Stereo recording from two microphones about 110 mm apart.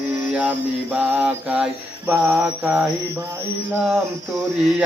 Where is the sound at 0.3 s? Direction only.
15° right (ahead or behind).